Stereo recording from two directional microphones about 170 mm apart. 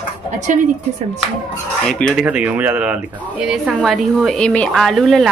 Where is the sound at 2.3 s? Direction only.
10° right (ahead or behind).